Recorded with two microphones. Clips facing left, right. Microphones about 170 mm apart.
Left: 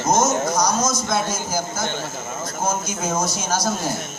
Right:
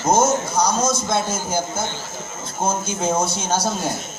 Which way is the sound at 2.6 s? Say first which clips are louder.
Right 3 dB; 30° right (ahead or behind).